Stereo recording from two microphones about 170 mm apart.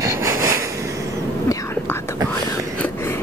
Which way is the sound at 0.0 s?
20° right (ahead or behind).